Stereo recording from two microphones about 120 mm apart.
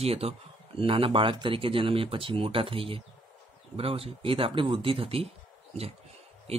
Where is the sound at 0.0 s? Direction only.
55° right (ahead or behind).